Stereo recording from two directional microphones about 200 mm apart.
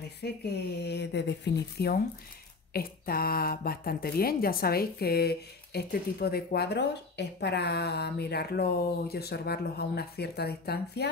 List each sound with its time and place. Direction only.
0.2 s speech: 55° left (ahead or behind)